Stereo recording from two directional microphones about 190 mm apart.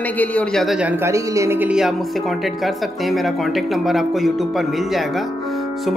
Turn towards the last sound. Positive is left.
turn(degrees=0)  # may be behind; listen again after turning